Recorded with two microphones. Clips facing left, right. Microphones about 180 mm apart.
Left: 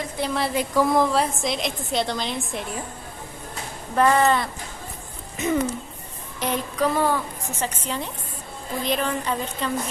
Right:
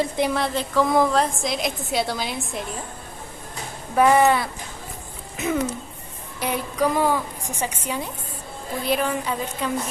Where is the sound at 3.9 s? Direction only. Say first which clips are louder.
Right 2 dB; 10° right (ahead or behind).